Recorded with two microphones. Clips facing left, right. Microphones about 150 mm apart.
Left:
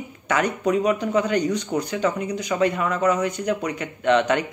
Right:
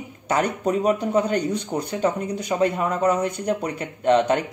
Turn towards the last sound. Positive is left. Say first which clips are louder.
# right 1 dB
turn(degrees=-35)  # may be behind; listen again after turning